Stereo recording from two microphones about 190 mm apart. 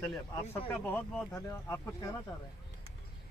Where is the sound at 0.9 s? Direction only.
15° left (ahead or behind).